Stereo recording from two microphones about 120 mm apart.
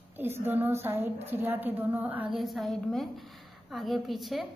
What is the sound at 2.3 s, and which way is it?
A woman's voice, centre (ahead or behind).